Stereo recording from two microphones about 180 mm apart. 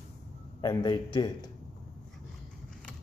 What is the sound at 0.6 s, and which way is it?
Speech, 25° left (ahead or behind).